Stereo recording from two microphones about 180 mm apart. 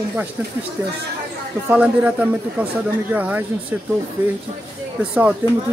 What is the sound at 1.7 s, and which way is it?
Speech, 10° right (ahead or behind).